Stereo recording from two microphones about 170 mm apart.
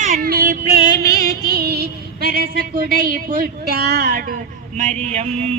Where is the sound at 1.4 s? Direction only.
70° right (ahead or behind).